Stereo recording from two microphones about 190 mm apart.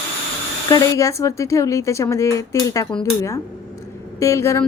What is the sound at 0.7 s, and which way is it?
A woman's voice, 20° left (ahead or behind).